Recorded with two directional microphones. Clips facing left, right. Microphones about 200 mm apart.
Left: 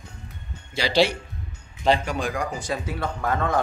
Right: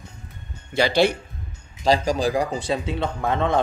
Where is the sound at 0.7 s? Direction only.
55° right (ahead or behind).